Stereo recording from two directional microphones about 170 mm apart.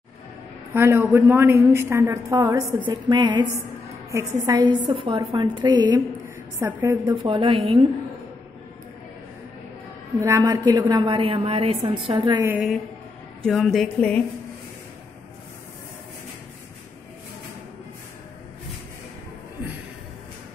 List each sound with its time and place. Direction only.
0.7 s a woman's voice: 15° right (ahead or behind)
7.2 s a woman's voice: 30° right (ahead or behind)
10.2 s a woman's voice: 20° right (ahead or behind)
12.4 s a woman's voice: 10° right (ahead or behind)
13.4 s a woman's voice: centre (ahead or behind)